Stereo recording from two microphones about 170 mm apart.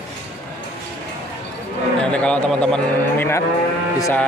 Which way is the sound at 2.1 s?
5° left (ahead or behind).